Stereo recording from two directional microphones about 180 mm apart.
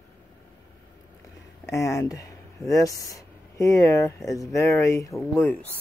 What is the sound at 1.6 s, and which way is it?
Speech, 15° left (ahead or behind).